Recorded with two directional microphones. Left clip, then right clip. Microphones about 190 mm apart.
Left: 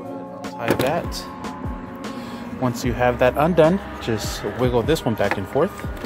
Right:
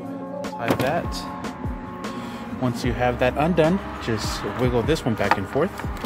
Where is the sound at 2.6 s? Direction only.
20° left (ahead or behind).